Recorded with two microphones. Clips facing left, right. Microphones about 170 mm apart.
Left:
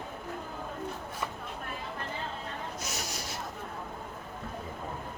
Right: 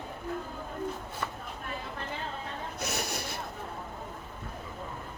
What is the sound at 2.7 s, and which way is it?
Snort, 60° right (ahead or behind).